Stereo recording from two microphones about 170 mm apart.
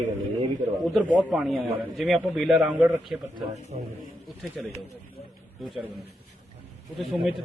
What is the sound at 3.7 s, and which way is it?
Speech, 40° right (ahead or behind).